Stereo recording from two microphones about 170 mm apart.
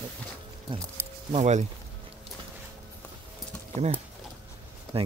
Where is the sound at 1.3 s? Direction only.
40° right (ahead or behind).